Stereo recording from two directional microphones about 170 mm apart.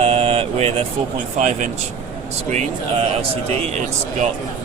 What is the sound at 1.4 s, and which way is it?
A man's voice, 45° right (ahead or behind).